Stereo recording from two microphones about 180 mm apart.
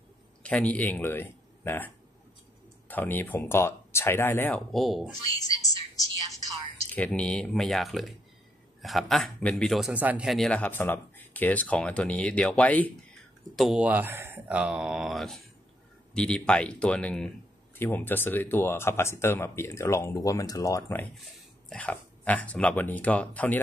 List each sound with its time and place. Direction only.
0.4 s speech: 5° left (ahead or behind)
2.9 s a man's voice: 10° left (ahead or behind)
5.6 s music: 20° left (ahead or behind)
6.9 s a man's voice: 5° left (ahead or behind)
13.6 s a man's voice: 5° right (ahead or behind)